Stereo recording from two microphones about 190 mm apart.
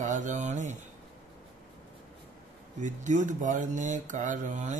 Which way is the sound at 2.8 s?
40° right (ahead or behind).